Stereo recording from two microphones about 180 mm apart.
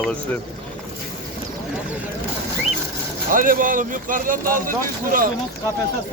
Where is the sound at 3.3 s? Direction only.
50° right (ahead or behind).